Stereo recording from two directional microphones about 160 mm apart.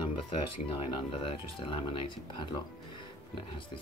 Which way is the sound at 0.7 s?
35° left (ahead or behind).